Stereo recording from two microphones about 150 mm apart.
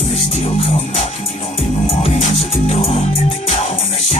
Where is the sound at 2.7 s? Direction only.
45° left (ahead or behind).